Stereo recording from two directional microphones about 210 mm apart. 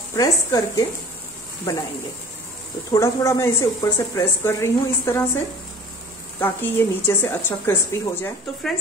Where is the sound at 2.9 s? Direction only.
15° left (ahead or behind).